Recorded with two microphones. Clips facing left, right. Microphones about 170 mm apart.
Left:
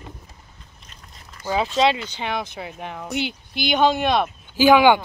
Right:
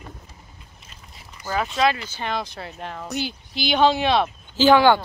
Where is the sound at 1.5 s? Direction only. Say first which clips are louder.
Left 2 dB; 20° left (ahead or behind).